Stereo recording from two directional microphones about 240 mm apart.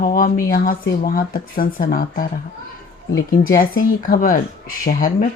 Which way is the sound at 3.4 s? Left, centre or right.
Left.